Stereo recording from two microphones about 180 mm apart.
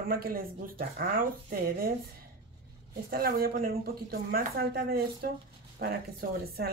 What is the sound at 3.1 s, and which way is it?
Speech, 55° right (ahead or behind).